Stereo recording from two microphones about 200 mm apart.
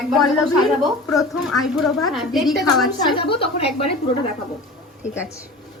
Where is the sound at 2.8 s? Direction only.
25° left (ahead or behind).